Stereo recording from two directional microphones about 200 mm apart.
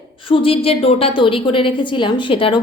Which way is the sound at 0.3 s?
25° left (ahead or behind).